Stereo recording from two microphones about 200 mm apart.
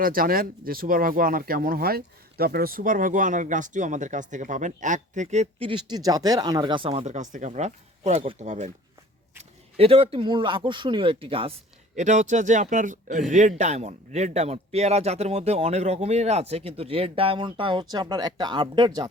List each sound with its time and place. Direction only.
0.0 s speech: 45° right (ahead or behind); by 19.0 s 20° right (ahead or behind)